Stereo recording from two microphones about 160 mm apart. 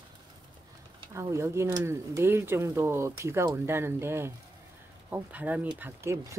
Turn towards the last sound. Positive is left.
turn(degrees=-15)  # may be behind; listen again after turning